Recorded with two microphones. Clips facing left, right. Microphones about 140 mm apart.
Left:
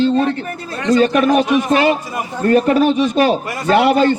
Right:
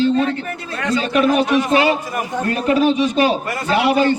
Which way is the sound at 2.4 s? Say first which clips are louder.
Left 4 dB; 45° left (ahead or behind).